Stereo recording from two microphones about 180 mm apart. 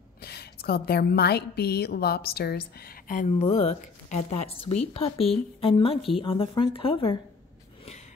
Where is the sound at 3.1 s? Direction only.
40° left (ahead or behind).